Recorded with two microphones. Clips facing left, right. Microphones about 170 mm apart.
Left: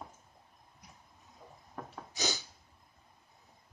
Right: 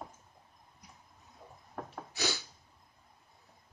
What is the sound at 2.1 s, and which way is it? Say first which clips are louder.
Snort: right 1 dB; 15° left (ahead or behind).